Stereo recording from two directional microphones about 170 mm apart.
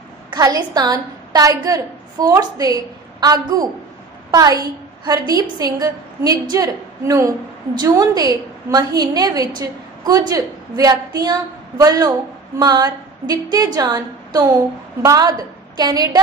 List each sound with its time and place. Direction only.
0.3 s a woman's voice: 25° right (ahead or behind)